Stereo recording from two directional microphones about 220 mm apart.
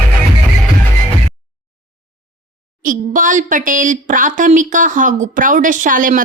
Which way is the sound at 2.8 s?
35° right (ahead or behind).